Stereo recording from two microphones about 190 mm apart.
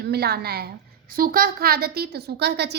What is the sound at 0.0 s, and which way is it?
A woman's voice, 55° right (ahead or behind).